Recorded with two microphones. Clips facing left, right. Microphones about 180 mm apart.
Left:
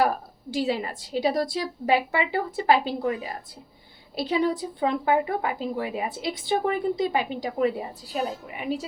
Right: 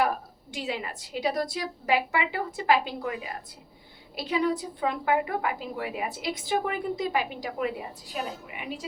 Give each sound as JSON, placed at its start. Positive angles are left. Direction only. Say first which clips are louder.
{"t": 0.5, "sound": "a woman's voice", "louder": "left 7 dB", "side_deg": 35}